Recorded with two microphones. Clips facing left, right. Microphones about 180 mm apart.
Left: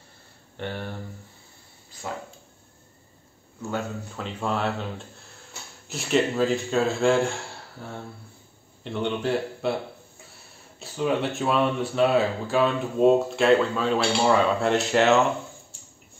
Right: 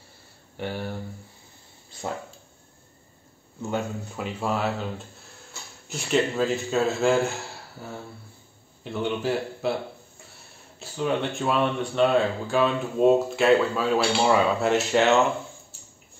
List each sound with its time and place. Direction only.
0.6 s speech: 5° right (ahead or behind)
3.7 s speech: 10° right (ahead or behind)
8.8 s speech: centre (ahead or behind)
10.8 s speech: centre (ahead or behind)
15.7 s a sound: 5° right (ahead or behind)